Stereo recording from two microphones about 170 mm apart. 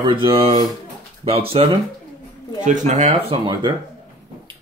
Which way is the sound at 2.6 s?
45° right (ahead or behind).